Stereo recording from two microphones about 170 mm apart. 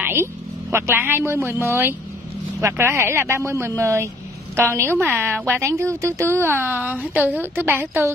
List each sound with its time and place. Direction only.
0.0 s a woman's voice: 15° right (ahead or behind)